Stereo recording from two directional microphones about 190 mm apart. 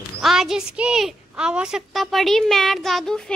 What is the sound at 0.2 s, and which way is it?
A woman's voice, centre (ahead or behind).